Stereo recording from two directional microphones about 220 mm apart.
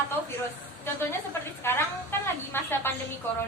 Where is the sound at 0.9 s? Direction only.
10° left (ahead or behind).